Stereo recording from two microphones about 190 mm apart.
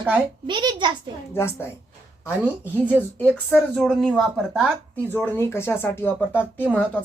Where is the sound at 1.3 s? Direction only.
15° left (ahead or behind).